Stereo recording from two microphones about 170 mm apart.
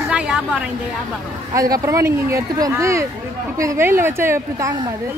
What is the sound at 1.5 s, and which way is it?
A woman's voice, 20° right (ahead or behind).